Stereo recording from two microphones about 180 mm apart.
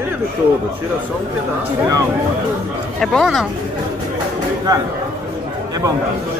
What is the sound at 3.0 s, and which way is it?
Speech, centre (ahead or behind).